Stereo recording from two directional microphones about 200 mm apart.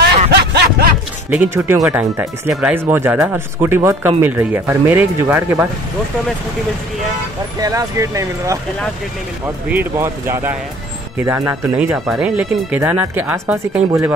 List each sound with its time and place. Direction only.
0.3 s a sound: 55° right (ahead or behind)
1.3 s speech: 10° right (ahead or behind)
7.6 s speech: 15° right (ahead or behind)
9.7 s speech: 10° right (ahead or behind)